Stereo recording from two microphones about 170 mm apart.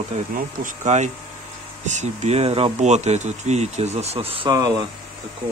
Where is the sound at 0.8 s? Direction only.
45° right (ahead or behind).